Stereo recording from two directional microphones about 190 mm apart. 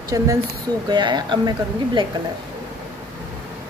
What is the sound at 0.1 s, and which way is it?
Speech, 15° right (ahead or behind).